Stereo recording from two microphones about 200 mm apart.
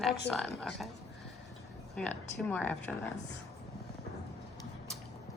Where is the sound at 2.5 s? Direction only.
5° left (ahead or behind).